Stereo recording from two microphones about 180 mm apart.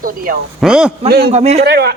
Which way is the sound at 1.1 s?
60° right (ahead or behind).